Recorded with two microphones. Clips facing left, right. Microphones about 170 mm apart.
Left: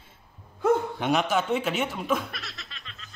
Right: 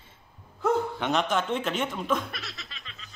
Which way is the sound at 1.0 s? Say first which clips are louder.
Left 2 dB; 10° left (ahead or behind).